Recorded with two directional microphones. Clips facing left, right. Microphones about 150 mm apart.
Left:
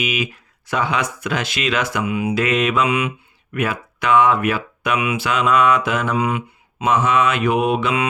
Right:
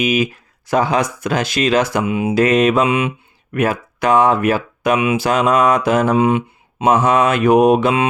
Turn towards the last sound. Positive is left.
turn(degrees=-40)  # may be behind; listen again after turning